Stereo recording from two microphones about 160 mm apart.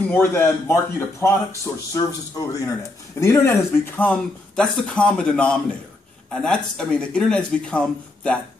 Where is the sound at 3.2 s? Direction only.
15° left (ahead or behind).